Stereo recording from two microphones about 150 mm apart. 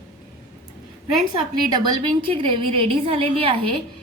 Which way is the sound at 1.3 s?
30° right (ahead or behind).